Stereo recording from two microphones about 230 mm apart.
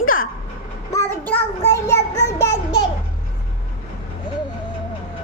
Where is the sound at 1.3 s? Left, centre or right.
Centre.